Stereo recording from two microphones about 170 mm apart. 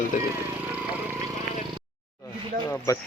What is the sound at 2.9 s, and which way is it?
Speech, 20° left (ahead or behind).